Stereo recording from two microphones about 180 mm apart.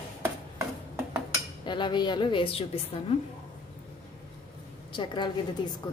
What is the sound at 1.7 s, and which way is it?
A woman's voice, 25° left (ahead or behind).